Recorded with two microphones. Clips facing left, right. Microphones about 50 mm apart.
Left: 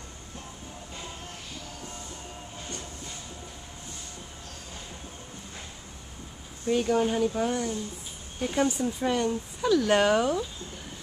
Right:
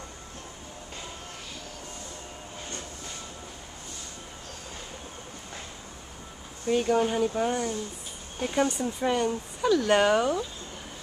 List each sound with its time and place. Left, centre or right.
6.7 s speech: centre